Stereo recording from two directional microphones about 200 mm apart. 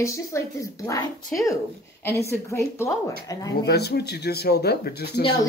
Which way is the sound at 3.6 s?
55° left (ahead or behind).